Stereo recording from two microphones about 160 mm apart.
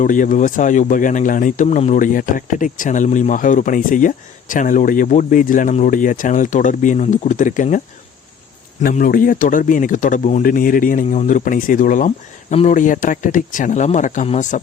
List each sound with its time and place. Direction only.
0.0 s speech: 55° left (ahead or behind)
8.8 s speech: 60° left (ahead or behind)